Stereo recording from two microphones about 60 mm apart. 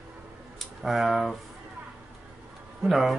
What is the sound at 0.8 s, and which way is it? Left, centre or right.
Speech, centre.